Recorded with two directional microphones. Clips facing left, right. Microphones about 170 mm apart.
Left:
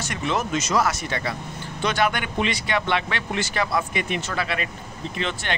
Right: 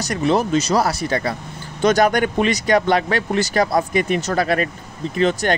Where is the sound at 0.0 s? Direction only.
35° right (ahead or behind).